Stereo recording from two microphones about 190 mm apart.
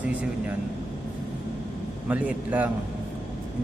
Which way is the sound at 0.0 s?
10° right (ahead or behind).